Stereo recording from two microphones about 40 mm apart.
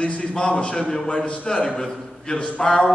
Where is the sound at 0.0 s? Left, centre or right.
Left.